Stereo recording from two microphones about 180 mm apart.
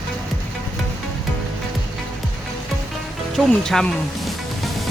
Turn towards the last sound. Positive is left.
turn(degrees=0)  # may be behind; listen again after turning